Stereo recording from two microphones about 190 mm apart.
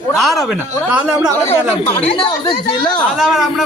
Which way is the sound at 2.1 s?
25° left (ahead or behind).